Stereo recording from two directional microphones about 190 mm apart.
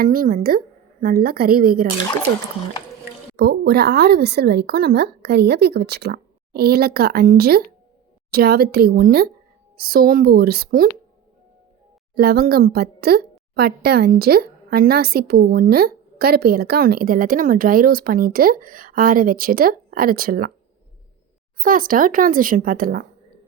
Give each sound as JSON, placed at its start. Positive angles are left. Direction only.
{"t": 0.0, "sound": "a woman's voice", "side_deg": -50}
{"t": 3.3, "sound": "a woman's voice", "side_deg": -60}
{"t": 12.1, "sound": "a woman's voice", "side_deg": -55}
{"t": 21.6, "sound": "a woman's voice", "side_deg": -45}